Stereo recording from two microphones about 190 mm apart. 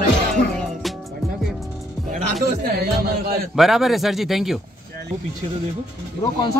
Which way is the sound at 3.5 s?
Centre (ahead or behind).